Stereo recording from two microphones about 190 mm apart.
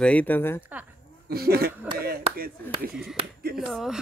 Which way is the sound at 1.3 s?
55° right (ahead or behind).